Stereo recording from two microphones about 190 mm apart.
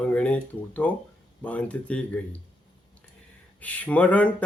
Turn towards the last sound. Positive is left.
turn(degrees=10)  # may be behind; listen again after turning